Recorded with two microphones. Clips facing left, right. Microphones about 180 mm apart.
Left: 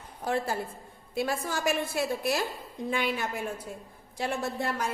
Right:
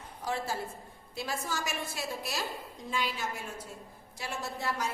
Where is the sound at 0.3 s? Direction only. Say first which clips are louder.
Left 5 dB; 55° left (ahead or behind).